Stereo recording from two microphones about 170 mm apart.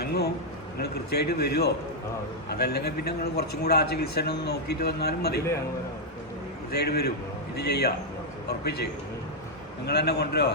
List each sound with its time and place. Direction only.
0.0 s a sound: 70° left (ahead or behind)
0.8 s a man's voice: 70° left (ahead or behind)
6.7 s a man's voice: 70° left (ahead or behind)